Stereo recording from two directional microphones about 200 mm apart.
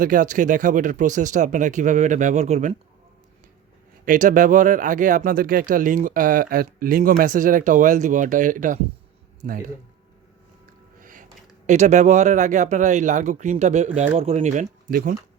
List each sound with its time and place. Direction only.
0.0 s speech: 40° right (ahead or behind)
4.0 s speech: 40° right (ahead or behind)
11.0 s speech: 40° right (ahead or behind)